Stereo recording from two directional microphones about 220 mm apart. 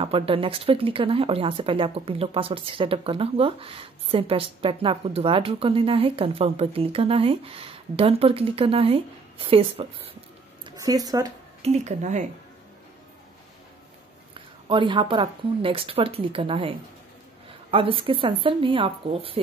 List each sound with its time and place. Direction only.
0.0 s speech: 25° right (ahead or behind)
11.6 s speech: 30° right (ahead or behind)
14.7 s speech: 20° right (ahead or behind)